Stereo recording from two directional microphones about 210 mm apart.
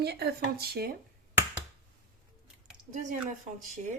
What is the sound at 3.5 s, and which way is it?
Speech, 40° right (ahead or behind).